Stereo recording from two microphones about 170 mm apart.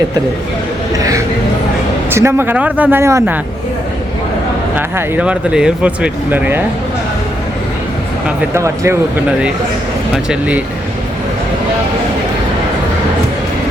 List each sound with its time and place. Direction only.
0.9 s speech: 20° right (ahead or behind)
4.9 s speech: 10° right (ahead or behind)
8.5 s speech: 15° right (ahead or behind)
10.2 s speech: 10° right (ahead or behind)